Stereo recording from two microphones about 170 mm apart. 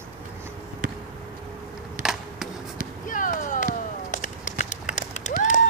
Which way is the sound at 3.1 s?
50° left (ahead or behind).